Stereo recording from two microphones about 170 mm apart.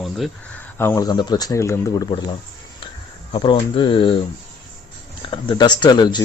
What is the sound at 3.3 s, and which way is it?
Speech, 30° left (ahead or behind).